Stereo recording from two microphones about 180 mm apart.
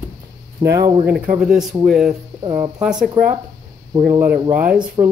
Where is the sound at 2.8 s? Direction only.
5° right (ahead or behind).